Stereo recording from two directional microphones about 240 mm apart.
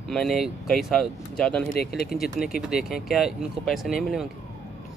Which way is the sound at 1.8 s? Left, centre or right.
Left.